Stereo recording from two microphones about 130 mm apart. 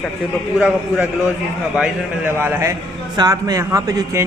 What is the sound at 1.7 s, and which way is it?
A man's voice, 10° right (ahead or behind).